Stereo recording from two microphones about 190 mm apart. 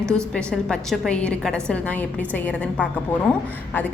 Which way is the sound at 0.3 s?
5° left (ahead or behind).